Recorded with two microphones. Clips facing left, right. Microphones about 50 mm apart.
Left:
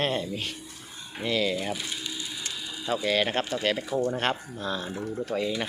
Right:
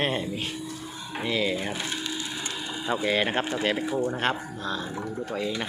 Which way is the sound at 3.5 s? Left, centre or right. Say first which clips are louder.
Right 1 dB; centre.